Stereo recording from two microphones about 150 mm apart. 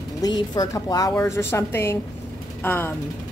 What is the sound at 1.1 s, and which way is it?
A woman's voice, 15° left (ahead or behind).